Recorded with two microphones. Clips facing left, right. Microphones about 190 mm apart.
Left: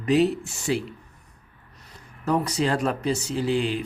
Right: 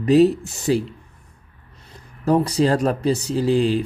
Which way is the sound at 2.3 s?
35° right (ahead or behind).